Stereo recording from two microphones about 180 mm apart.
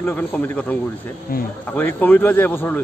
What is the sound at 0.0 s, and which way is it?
Speech, 10° left (ahead or behind).